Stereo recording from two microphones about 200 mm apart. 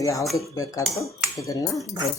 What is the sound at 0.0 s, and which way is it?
Speech, 15° left (ahead or behind).